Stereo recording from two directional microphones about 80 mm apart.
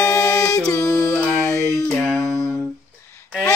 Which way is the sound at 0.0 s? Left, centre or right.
Left.